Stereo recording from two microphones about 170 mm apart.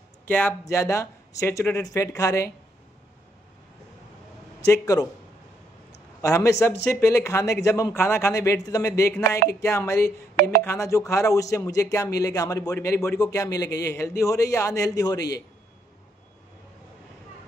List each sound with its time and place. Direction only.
0.2 s speech: 10° left (ahead or behind)
4.6 s speech: 20° left (ahead or behind)
6.2 s speech: 20° left (ahead or behind)